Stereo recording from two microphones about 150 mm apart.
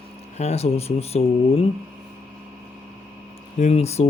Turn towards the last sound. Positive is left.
turn(degrees=45)  # may be behind; listen again after turning